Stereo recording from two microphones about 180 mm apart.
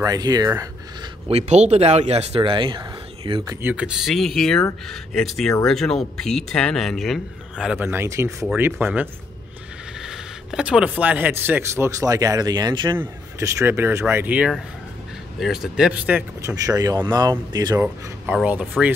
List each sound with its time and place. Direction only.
0.0 s speech: 20° right (ahead or behind)
1.3 s speech: 40° right (ahead or behind)
3.6 s speech: 5° right (ahead or behind)
16.5 s speech: 20° right (ahead or behind)
17.8 s speech: 5° right (ahead or behind)